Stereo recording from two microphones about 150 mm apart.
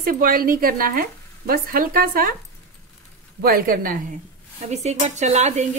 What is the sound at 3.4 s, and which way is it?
Speech, 85° right.